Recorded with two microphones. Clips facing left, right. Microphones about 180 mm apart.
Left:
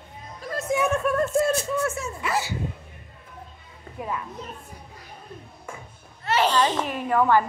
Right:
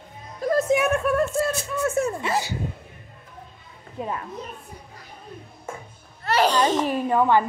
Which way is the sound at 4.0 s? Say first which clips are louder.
Right 2 dB; 25° right (ahead or behind).